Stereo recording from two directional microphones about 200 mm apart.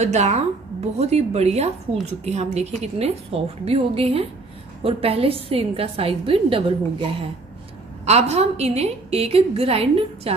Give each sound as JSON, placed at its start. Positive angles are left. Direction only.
{"t": 0.0, "sound": "a woman's voice", "side_deg": -35}